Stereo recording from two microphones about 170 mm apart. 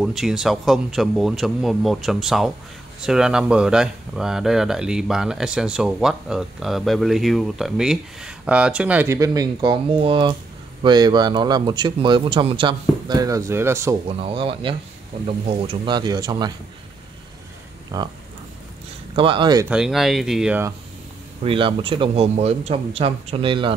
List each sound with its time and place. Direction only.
0.0 s a man's voice: centre (ahead or behind)
14.0 s a man's voice: 35° right (ahead or behind)
17.9 s a man's voice: 20° right (ahead or behind)
19.1 s a man's voice: 30° right (ahead or behind)
19.7 s speech: 5° right (ahead or behind)
21.5 s a man's voice: 30° right (ahead or behind)